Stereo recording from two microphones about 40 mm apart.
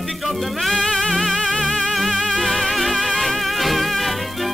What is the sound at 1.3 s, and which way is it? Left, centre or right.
Music, centre.